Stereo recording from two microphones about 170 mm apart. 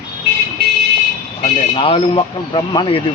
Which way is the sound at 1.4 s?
35° left (ahead or behind).